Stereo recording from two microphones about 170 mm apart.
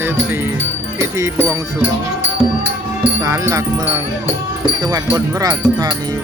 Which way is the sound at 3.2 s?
20° right (ahead or behind).